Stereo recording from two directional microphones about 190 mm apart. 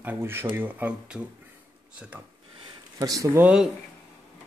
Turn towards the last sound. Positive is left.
turn(degrees=-5)  # may be behind; listen again after turning